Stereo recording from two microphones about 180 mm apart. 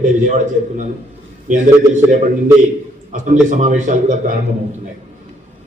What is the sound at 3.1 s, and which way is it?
A man's voice, 45° right (ahead or behind).